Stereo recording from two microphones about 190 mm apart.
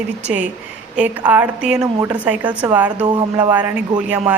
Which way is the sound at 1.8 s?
20° right (ahead or behind).